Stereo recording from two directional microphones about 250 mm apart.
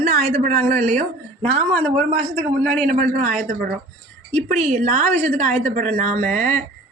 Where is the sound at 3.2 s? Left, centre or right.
Right.